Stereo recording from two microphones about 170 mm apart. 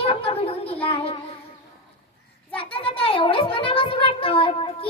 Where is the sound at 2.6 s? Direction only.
35° left (ahead or behind).